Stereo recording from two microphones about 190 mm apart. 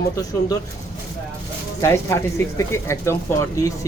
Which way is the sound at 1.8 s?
15° left (ahead or behind).